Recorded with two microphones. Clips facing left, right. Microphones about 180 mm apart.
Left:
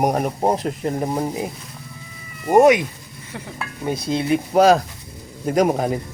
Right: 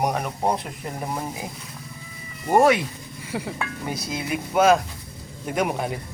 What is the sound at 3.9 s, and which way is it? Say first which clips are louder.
Speech: left 10 dB; 25° left (ahead or behind).